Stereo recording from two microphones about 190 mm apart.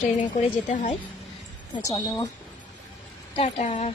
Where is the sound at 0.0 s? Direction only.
40° left (ahead or behind).